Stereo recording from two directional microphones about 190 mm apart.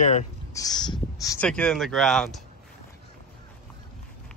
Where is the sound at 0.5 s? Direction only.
20° left (ahead or behind).